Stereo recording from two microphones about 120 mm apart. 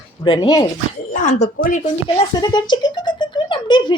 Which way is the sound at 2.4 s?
35° left (ahead or behind).